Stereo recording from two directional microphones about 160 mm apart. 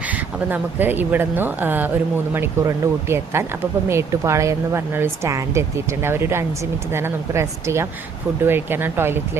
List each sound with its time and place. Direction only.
0.0 s speech: 10° right (ahead or behind)